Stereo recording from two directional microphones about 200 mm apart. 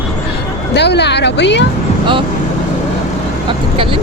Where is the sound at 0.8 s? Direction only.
60° left (ahead or behind).